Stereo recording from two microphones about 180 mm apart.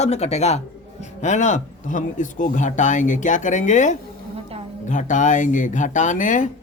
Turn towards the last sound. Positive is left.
turn(degrees=45)  # may be behind; listen again after turning